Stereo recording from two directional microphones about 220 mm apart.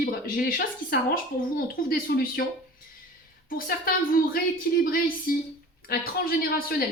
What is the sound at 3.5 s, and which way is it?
Speech, 40° left (ahead or behind).